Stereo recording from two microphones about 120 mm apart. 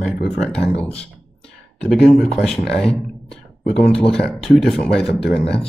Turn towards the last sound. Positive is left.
turn(degrees=5)  # may be behind; listen again after turning